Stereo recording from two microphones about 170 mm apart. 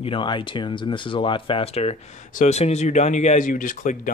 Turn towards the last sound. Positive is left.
turn(degrees=50)  # may be behind; listen again after turning